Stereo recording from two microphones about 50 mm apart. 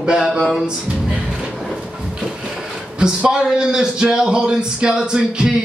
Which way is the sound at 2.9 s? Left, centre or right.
Centre.